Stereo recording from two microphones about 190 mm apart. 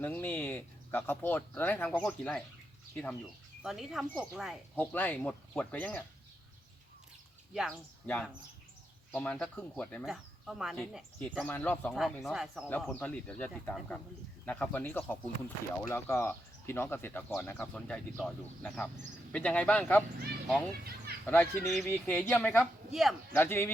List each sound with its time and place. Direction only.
0.0 s speech: 10° left (ahead or behind)
4.8 s speech: 10° left (ahead or behind)
8.0 s speech: 10° left (ahead or behind)
12.6 s speech: 10° left (ahead or behind)
20.8 s speech: 55° right (ahead or behind)
21.2 s speech: 5° left (ahead or behind)
23.3 s speech: 10° left (ahead or behind)